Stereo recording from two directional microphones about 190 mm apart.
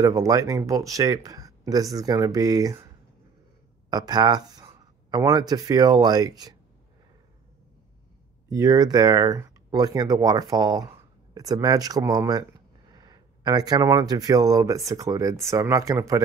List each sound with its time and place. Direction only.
0.0 s speech: 20° right (ahead or behind)
3.9 s speech: 20° right (ahead or behind)
8.5 s speech: 20° right (ahead or behind)